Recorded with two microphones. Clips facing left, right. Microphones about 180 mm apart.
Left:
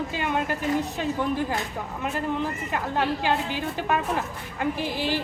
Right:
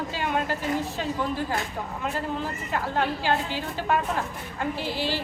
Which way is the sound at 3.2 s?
15° left (ahead or behind).